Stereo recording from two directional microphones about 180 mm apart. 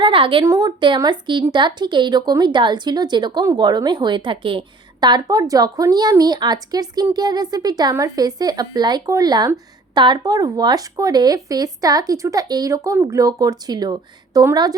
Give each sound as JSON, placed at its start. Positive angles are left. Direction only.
{"t": 0.0, "sound": "speech", "side_deg": -30}